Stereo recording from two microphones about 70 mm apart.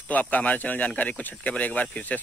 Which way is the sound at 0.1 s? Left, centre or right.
Left.